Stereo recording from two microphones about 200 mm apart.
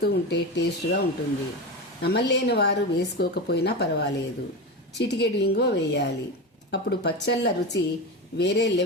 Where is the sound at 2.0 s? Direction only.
55° left (ahead or behind).